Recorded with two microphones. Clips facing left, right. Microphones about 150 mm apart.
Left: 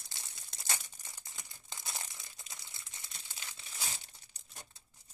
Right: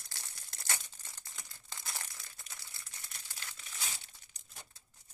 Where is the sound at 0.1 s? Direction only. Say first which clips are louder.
Even; 20° left (ahead or behind).